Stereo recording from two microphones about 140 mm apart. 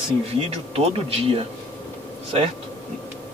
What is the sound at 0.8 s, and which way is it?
Speech, 45° right (ahead or behind).